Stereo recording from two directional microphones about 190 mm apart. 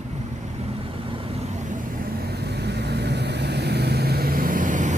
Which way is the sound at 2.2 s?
60° right (ahead or behind).